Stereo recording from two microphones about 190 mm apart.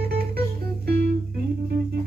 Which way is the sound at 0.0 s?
55° right (ahead or behind).